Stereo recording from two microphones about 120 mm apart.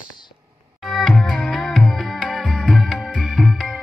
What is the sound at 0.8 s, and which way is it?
Music, centre (ahead or behind).